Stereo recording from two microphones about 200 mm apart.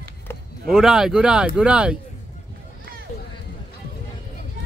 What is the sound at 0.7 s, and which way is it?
Speech, centre (ahead or behind).